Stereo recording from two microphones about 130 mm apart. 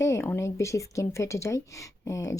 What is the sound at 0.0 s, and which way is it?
Speech, 20° left (ahead or behind).